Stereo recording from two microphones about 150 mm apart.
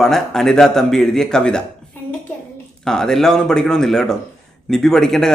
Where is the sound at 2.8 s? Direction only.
5° left (ahead or behind).